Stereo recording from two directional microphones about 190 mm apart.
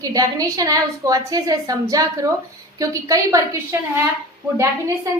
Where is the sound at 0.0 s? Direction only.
20° right (ahead or behind).